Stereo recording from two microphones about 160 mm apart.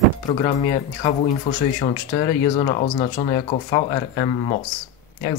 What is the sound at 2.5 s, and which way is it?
Speech, 45° left (ahead or behind).